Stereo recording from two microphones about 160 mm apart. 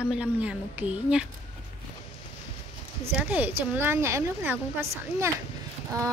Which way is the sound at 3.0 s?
10° right (ahead or behind).